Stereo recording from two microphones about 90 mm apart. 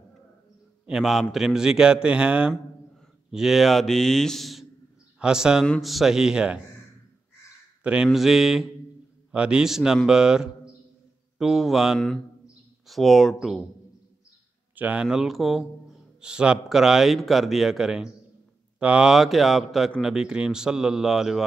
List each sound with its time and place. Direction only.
0.8 s speech: 5° right (ahead or behind)
7.8 s speech: 10° right (ahead or behind)
14.8 s speech: 15° right (ahead or behind)
15.0 s speech: 5° right (ahead or behind)